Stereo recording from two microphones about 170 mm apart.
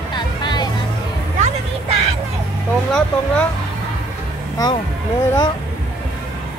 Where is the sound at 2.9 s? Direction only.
5° left (ahead or behind).